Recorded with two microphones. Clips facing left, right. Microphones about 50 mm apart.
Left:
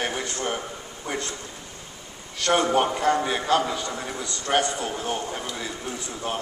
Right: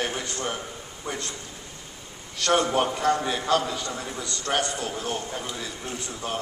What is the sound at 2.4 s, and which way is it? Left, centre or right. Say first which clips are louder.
A man's voice: left 1 dB; left.